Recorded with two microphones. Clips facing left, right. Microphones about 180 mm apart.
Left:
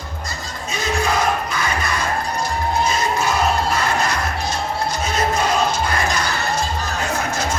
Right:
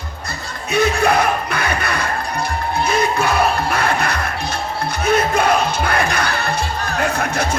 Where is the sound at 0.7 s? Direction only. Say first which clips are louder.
Right 6 dB; 60° right (ahead or behind).